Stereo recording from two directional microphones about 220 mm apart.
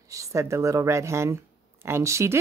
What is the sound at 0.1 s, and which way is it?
Speech, 15° right (ahead or behind).